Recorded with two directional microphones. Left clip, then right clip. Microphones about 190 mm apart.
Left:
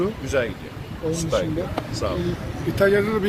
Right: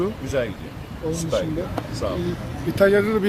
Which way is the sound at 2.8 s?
60° right (ahead or behind).